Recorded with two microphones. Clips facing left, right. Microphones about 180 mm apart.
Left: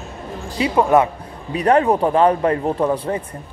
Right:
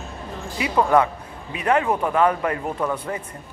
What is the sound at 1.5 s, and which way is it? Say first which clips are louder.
Speech: left 5 dB; 35° left (ahead or behind).